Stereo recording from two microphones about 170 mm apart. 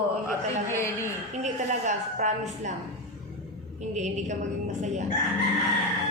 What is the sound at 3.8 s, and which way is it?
A woman's voice, 45° right (ahead or behind).